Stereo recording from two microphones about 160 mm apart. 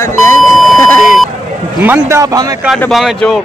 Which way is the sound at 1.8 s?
20° right (ahead or behind).